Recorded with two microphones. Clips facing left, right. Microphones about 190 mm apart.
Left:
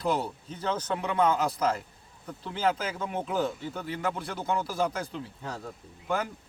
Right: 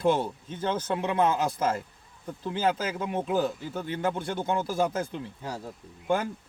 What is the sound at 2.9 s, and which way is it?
Speech, 25° right (ahead or behind).